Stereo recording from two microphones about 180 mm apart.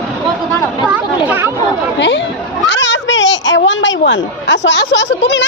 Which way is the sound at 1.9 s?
85° left.